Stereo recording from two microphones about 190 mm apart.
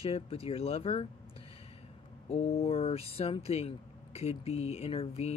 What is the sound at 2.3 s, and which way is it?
Mantra, 35° left (ahead or behind).